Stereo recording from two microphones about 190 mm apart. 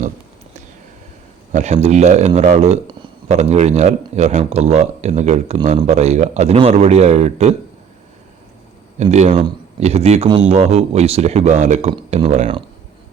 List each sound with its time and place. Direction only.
1.5 s speech: 40° right (ahead or behind)
9.0 s speech: 35° right (ahead or behind)